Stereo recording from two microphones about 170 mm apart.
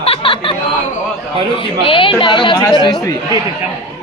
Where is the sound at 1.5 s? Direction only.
30° left (ahead or behind).